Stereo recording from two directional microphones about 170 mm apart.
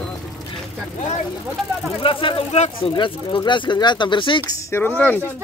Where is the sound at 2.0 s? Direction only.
30° left (ahead or behind).